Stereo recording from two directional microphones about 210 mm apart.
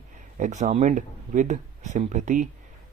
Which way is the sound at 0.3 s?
35° right (ahead or behind).